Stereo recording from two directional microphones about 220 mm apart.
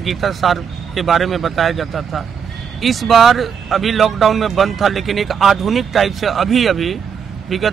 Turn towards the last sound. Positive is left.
turn(degrees=0)  # may be behind; listen again after turning